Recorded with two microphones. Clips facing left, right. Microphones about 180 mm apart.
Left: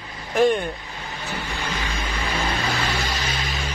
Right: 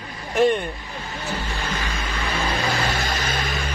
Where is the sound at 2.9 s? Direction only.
55° right (ahead or behind).